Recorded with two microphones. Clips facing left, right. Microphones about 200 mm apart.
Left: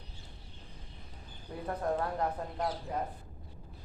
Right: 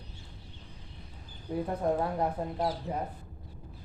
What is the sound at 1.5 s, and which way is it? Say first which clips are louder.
A woman's voice: right 4 dB; 20° right (ahead or behind).